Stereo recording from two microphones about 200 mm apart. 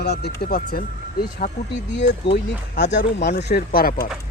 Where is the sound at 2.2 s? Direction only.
60° left (ahead or behind).